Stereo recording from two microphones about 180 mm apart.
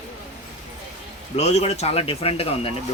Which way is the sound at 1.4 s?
40° left (ahead or behind).